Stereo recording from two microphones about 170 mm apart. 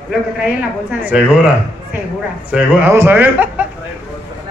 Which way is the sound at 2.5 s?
10° right (ahead or behind).